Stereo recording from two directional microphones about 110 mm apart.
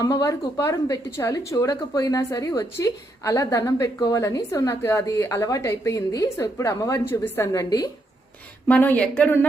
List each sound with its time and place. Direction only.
0.0 s a woman's voice: 30° left (ahead or behind)
7.1 s speech: 20° left (ahead or behind)
7.4 s a woman's voice: 30° left (ahead or behind)
8.6 s speech: 15° left (ahead or behind)